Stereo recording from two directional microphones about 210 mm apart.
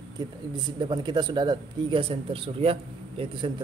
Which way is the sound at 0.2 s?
20° right (ahead or behind).